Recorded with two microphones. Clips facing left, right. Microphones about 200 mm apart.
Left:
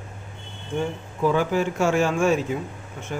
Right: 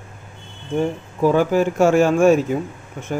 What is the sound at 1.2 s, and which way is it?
Speech, 45° right (ahead or behind).